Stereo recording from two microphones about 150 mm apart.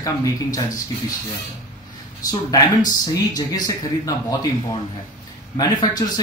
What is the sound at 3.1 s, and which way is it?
Speech, 25° left (ahead or behind).